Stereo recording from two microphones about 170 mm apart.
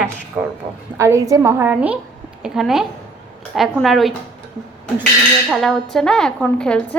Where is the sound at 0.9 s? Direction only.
15° right (ahead or behind); by 4.1 s centre (ahead or behind).